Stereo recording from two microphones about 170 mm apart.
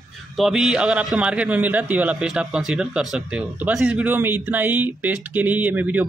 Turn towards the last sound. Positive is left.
turn(degrees=-10)  # may be behind; listen again after turning